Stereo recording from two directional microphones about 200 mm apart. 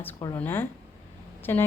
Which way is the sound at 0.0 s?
15° left (ahead or behind).